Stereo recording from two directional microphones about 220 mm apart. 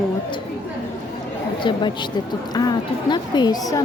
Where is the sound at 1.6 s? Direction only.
20° left (ahead or behind).